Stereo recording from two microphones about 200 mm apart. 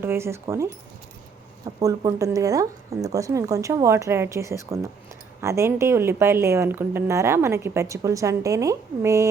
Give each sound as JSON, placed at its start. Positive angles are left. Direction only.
{"t": 0.0, "sound": "a woman's voice", "side_deg": -10}
{"t": 1.8, "sound": "a woman's voice", "side_deg": -15}